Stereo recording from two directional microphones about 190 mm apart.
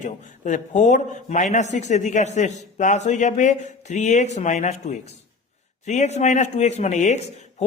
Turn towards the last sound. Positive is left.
turn(degrees=35)  # may be behind; listen again after turning